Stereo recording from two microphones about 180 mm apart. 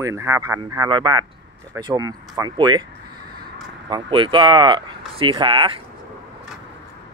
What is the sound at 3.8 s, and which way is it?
Speech, 30° right (ahead or behind).